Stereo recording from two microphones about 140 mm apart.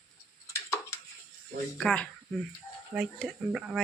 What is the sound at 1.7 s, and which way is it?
Speech, 5° left (ahead or behind).